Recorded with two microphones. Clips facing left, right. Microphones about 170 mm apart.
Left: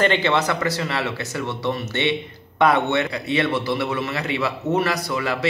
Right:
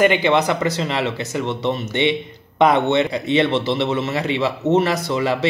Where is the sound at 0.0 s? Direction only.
15° right (ahead or behind).